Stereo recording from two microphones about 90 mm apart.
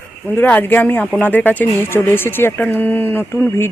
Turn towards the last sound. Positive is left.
turn(degrees=25)  # may be behind; listen again after turning